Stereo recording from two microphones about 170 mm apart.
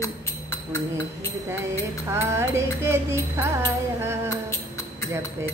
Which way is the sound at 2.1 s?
15° right (ahead or behind).